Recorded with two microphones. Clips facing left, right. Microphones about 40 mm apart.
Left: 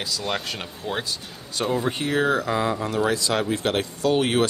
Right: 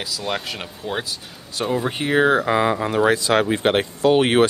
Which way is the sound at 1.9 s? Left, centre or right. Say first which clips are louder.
Right 8 dB; right.